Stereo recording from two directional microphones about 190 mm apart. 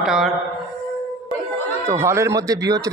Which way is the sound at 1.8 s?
15° right (ahead or behind).